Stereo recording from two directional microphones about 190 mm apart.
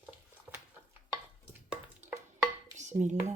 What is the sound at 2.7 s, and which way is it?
Dishes, 40° right (ahead or behind).